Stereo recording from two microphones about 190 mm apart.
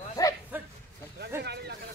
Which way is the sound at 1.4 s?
60° right (ahead or behind).